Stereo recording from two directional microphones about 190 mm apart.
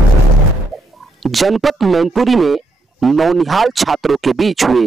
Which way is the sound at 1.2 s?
Centre (ahead or behind).